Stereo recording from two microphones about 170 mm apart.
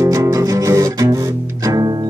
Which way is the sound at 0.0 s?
20° right (ahead or behind).